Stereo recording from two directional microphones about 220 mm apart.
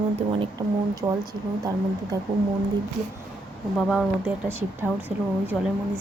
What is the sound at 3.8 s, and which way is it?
A woman's voice, centre (ahead or behind).